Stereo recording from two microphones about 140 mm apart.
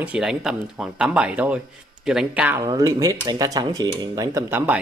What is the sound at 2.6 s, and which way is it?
Speech, 25° right (ahead or behind).